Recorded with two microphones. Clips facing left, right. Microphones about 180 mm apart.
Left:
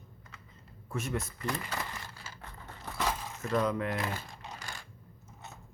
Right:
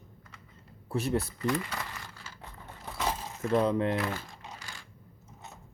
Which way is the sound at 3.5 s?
30° right (ahead or behind).